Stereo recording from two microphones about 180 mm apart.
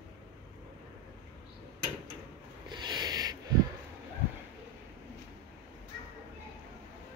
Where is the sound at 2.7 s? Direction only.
25° right (ahead or behind).